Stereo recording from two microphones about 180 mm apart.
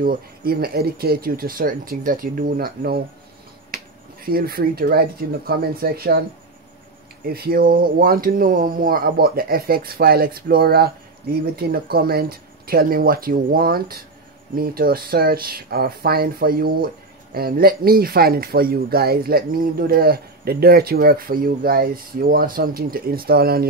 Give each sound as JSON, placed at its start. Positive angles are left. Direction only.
{"t": 0.0, "sound": "speech", "side_deg": -55}
{"t": 4.3, "sound": "speech", "side_deg": -55}
{"t": 7.2, "sound": "speech", "side_deg": -60}